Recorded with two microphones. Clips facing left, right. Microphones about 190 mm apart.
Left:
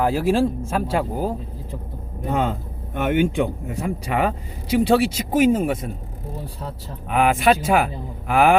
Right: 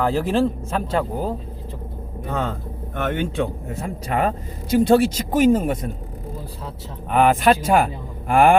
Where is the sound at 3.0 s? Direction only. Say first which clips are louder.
Left 3 dB; 15° left (ahead or behind).